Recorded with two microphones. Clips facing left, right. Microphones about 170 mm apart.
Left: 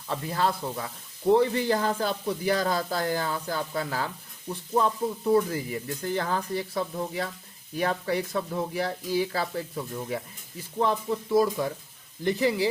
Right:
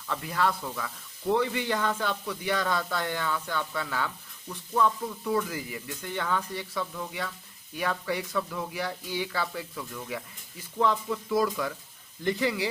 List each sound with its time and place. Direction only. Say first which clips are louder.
0.1 s speech: left 1 dB; 30° left (ahead or behind)